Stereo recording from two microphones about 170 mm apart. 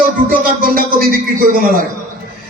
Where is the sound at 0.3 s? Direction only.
60° right (ahead or behind).